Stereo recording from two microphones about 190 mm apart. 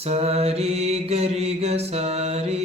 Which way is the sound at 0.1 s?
35° right (ahead or behind).